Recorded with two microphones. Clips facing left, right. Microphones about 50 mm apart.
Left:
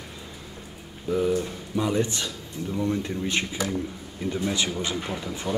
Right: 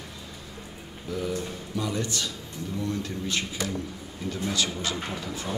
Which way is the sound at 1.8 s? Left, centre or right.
Left.